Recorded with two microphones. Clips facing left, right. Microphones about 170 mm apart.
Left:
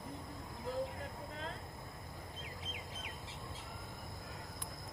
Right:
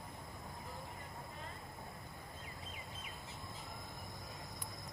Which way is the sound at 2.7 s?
90° left.